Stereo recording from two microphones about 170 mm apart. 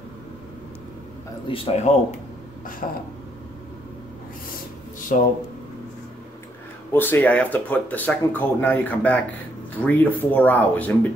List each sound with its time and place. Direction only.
1.5 s speech: 35° left (ahead or behind)
2.8 s speech: 50° left (ahead or behind)
5.1 s speech: 50° left (ahead or behind)
6.9 s speech: 10° left (ahead or behind)